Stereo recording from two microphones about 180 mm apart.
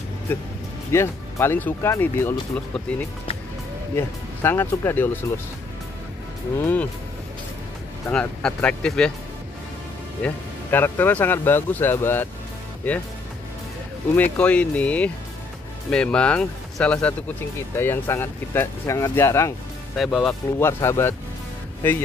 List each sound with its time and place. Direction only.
0.9 s speech: 15° left (ahead or behind)
6.6 s speech: 10° left (ahead or behind)
8.1 s speech: 5° left (ahead or behind)
10.2 s speech: 10° left (ahead or behind)
14.1 s speech: 10° left (ahead or behind)
20.0 s speech: centre (ahead or behind)
20.5 s speech: 15° left (ahead or behind)